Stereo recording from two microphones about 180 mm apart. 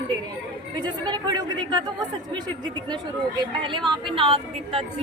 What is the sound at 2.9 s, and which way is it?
A woman's voice, 25° right (ahead or behind).